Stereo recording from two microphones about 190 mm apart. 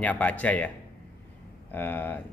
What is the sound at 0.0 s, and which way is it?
Speech, 10° left (ahead or behind).